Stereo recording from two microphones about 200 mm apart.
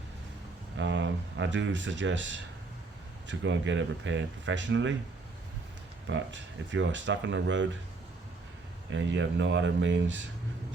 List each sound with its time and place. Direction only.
0.8 s speech: 65° right (ahead or behind)
6.1 s speech: 65° right (ahead or behind)
8.9 s speech: 70° right (ahead or behind)